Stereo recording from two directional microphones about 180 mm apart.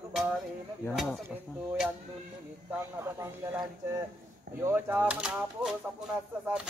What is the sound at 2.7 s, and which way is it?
Speech, 15° right (ahead or behind).